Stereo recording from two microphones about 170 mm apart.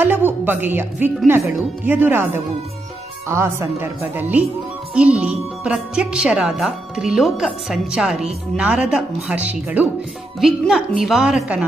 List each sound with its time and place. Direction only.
0.0 s a woman's voice: 10° right (ahead or behind)